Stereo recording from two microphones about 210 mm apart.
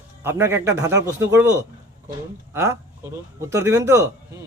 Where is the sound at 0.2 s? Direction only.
10° right (ahead or behind).